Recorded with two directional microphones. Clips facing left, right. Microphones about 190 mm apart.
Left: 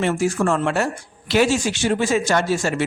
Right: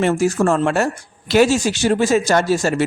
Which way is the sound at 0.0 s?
45° right (ahead or behind).